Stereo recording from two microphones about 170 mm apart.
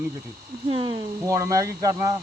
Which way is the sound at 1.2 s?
20° right (ahead or behind).